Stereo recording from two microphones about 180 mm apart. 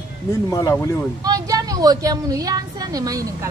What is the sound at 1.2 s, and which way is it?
A woman's voice, 20° right (ahead or behind).